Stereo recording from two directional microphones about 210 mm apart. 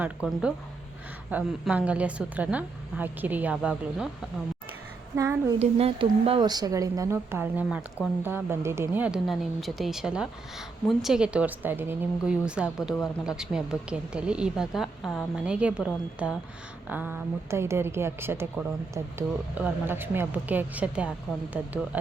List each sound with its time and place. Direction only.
0.2 s a woman's voice: 5° right (ahead or behind)
5.1 s a woman's voice: 15° right (ahead or behind)
5.5 s a woman's voice: 30° right (ahead or behind); by 21.7 s 5° right (ahead or behind)